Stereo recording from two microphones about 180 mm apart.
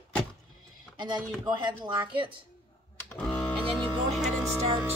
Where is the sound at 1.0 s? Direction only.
25° right (ahead or behind).